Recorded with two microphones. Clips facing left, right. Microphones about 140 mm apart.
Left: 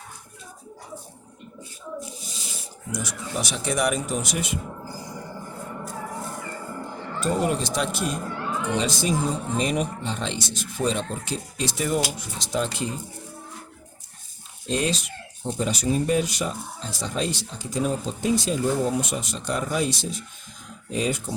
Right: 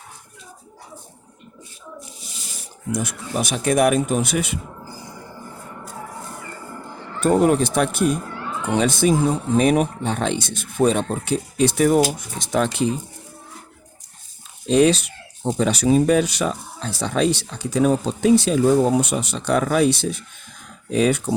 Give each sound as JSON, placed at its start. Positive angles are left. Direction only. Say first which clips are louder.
{"t": 2.9, "sound": "speech", "louder": "right 5 dB", "side_deg": -55}
{"t": 7.2, "sound": "speech", "louder": "right 8 dB", "side_deg": -60}
{"t": 14.7, "sound": "speech", "louder": "right 10 dB", "side_deg": -70}